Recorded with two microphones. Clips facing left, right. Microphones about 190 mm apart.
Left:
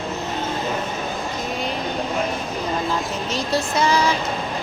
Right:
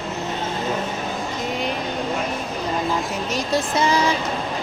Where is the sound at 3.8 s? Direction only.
25° right (ahead or behind).